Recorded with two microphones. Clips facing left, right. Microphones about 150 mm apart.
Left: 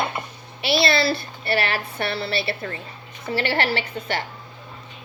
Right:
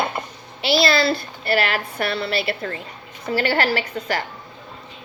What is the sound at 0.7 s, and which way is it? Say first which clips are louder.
A child's voice: right 2 dB; 25° left (ahead or behind).